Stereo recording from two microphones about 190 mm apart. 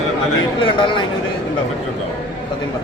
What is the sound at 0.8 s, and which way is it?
Speech, 25° left (ahead or behind).